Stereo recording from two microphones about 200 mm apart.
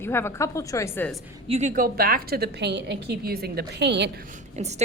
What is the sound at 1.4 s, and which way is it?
A woman's voice, 35° right (ahead or behind).